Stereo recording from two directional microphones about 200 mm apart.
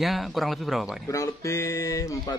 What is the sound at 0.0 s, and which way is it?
Speech, centre (ahead or behind).